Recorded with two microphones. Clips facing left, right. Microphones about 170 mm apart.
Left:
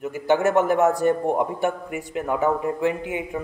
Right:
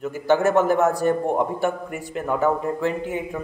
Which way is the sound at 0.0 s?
20° left (ahead or behind).